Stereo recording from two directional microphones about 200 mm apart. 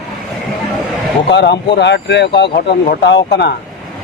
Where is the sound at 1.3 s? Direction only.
60° left (ahead or behind).